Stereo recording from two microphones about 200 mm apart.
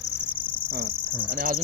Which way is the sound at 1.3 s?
45° right (ahead or behind).